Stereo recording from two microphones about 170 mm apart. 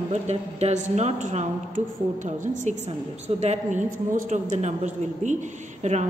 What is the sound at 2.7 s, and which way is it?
A woman's voice, 45° right (ahead or behind).